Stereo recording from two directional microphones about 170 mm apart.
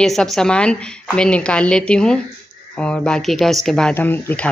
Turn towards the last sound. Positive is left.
turn(degrees=10)  # may be behind; listen again after turning